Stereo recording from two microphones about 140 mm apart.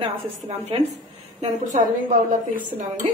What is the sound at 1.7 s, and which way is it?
Speech, 65° right (ahead or behind).